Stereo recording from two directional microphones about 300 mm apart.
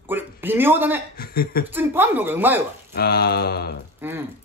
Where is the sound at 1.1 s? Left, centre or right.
Left.